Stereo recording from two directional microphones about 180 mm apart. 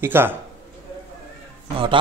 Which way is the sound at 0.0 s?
10° right (ahead or behind).